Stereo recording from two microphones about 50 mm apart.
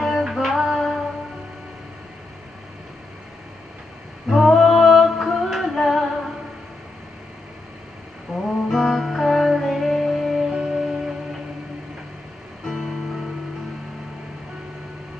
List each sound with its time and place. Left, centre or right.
0.0 s music: centre
4.3 s female singing: centre
8.4 s music: centre
12.6 s music: centre